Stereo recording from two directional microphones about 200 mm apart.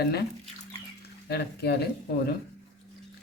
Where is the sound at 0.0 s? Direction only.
55° left (ahead or behind).